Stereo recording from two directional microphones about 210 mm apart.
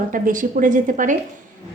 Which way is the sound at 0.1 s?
40° right (ahead or behind).